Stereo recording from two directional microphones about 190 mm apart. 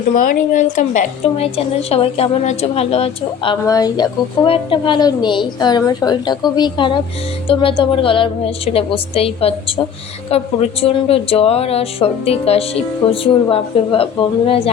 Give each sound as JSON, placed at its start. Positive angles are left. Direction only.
{"t": 0.2, "sound": "a woman's voice", "side_deg": 45}